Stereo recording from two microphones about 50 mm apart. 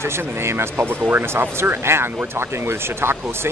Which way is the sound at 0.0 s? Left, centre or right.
Right.